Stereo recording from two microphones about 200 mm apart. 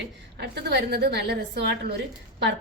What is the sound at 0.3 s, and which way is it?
A woman's voice, 55° right (ahead or behind).